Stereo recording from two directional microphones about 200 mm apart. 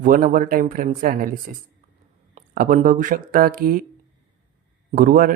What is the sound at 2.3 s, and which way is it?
Speech, 45° right (ahead or behind).